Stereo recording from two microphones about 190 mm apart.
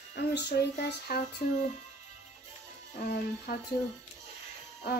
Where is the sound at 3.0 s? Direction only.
50° left (ahead or behind).